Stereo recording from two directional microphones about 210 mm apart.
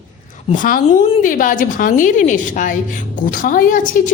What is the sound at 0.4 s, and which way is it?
A woman's voice, 40° left (ahead or behind).